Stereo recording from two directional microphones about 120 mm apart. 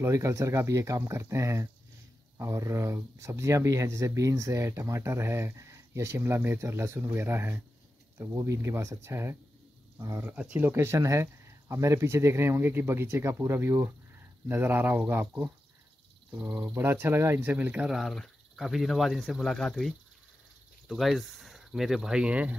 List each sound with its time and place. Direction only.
0.0 s speech: 25° right (ahead or behind)
10.3 s speech: 10° right (ahead or behind)
17.9 s speech: centre (ahead or behind)